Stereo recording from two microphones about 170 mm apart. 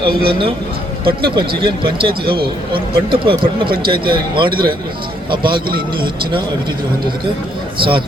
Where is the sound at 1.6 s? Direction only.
30° right (ahead or behind).